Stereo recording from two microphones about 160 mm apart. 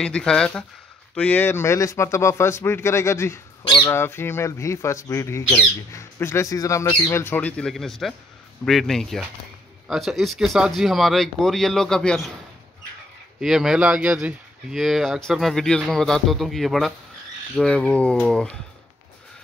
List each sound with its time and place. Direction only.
0.0 s speech: 5° left (ahead or behind)
13.4 s speech: 5° right (ahead or behind)